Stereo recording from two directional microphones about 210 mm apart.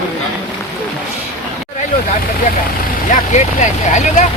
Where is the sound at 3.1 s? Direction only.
35° left (ahead or behind).